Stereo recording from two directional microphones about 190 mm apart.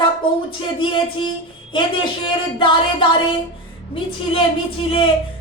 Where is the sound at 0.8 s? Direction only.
25° left (ahead or behind).